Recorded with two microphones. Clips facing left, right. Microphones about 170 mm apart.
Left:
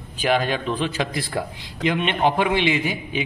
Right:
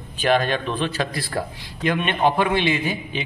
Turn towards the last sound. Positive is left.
turn(degrees=15)  # may be behind; listen again after turning